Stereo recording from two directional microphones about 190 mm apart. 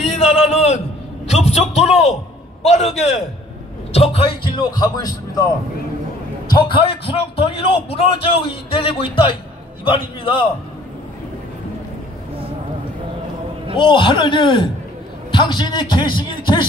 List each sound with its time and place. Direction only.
0.0 s a sound: 35° left (ahead or behind)
2.6 s a man's voice: 35° left (ahead or behind); by 5.5 s 20° left (ahead or behind)
6.5 s a man's voice: 25° left (ahead or behind)
13.7 s a man's voice: 25° left (ahead or behind)